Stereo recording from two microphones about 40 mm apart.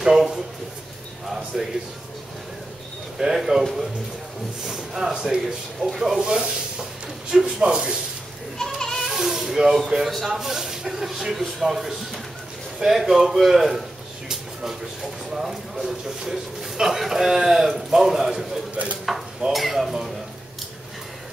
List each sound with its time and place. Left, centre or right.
0.0 s a sound: centre
3.2 s speech: centre
4.6 s speech: centre
6.3 s a sound: centre
8.5 s children playing: centre
9.1 s cat: centre
9.9 s speech: centre